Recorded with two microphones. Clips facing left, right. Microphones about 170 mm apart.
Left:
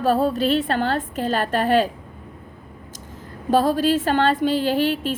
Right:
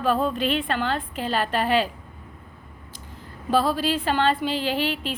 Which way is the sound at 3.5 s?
45° left (ahead or behind).